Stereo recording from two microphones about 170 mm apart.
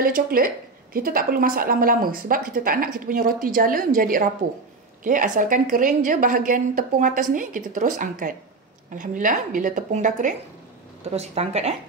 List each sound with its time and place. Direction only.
0.0 s a woman's voice: 55° right (ahead or behind); by 11.7 s 40° right (ahead or behind)